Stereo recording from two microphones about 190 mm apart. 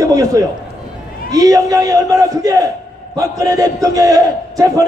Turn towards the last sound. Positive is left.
turn(degrees=-15)  # may be behind; listen again after turning